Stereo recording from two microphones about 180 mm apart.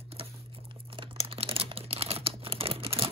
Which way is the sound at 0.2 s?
30° right (ahead or behind).